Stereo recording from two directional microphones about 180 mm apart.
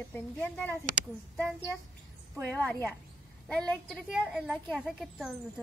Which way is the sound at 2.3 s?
10° left (ahead or behind).